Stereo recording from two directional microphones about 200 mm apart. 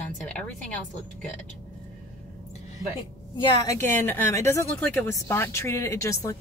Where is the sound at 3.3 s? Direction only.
15° left (ahead or behind).